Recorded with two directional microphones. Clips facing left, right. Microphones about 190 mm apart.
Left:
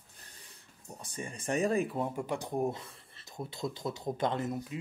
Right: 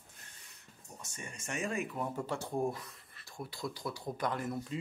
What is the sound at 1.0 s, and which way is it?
Speech, 30° left (ahead or behind).